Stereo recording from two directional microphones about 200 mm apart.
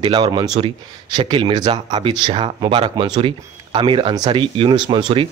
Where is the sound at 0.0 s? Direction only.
20° right (ahead or behind).